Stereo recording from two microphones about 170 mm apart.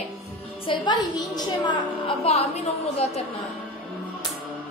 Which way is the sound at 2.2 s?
35° left (ahead or behind).